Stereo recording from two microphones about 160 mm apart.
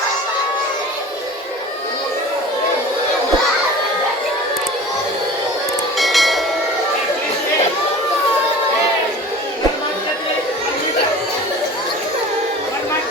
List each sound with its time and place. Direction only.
6.0 s train: centre (ahead or behind)